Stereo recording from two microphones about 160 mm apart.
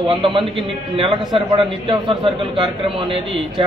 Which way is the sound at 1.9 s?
30° right (ahead or behind).